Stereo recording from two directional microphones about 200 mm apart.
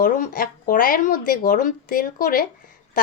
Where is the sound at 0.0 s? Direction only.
40° left (ahead or behind).